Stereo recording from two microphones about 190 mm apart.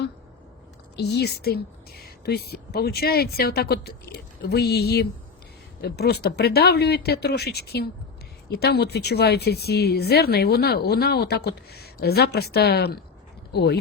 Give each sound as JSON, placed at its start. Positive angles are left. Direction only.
{"t": 0.9, "sound": "speech", "side_deg": 60}